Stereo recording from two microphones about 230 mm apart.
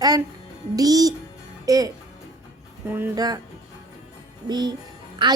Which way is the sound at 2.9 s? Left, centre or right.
Centre.